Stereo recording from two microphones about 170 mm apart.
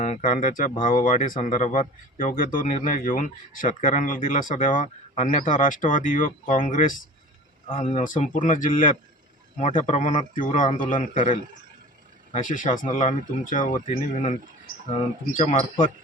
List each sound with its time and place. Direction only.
0.0 s speech: 50° left (ahead or behind)